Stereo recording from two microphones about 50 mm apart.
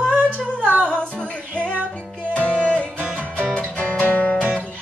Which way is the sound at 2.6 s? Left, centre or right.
Left.